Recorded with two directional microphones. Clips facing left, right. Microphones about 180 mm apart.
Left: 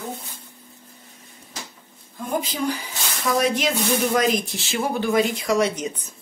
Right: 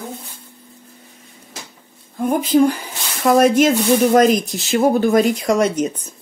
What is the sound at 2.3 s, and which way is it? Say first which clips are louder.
Speech: right 10 dB; 50° right (ahead or behind).